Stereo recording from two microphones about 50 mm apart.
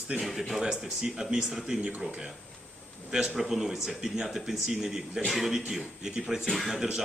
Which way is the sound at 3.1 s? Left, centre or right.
Centre.